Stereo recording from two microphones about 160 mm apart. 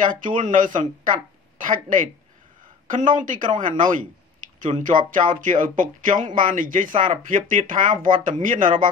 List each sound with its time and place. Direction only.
0.0 s speech: 55° right (ahead or behind)